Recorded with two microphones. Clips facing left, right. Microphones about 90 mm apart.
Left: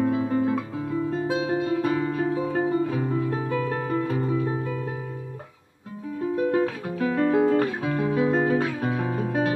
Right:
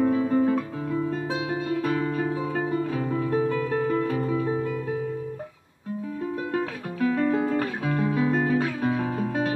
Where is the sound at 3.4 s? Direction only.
5° left (ahead or behind).